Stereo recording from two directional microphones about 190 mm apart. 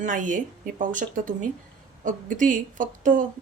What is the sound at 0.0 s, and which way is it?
Speech, 40° right (ahead or behind).